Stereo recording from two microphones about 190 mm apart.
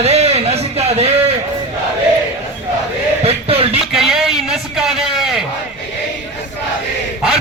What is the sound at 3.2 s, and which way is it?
Music, 30° right (ahead or behind).